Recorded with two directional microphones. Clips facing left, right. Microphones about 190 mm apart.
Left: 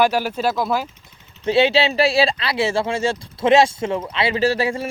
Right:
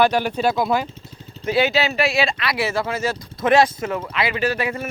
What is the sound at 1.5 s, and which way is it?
Speech, 30° left (ahead or behind).